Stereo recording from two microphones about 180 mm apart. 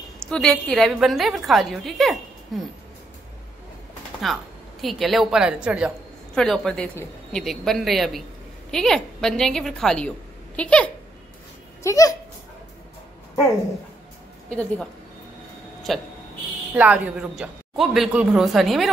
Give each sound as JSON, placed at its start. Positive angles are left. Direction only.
{"t": 0.3, "sound": "a woman's voice", "side_deg": 5}
{"t": 4.3, "sound": "a woman's voice", "side_deg": 0}
{"t": 11.8, "sound": "speech", "side_deg": 20}
{"t": 14.5, "sound": "a woman's voice", "side_deg": 5}
{"t": 15.9, "sound": "a woman's voice", "side_deg": 0}